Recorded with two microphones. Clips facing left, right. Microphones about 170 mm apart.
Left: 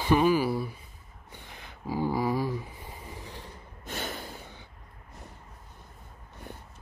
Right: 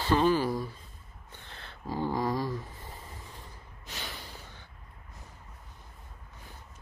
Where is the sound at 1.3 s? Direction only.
15° left (ahead or behind).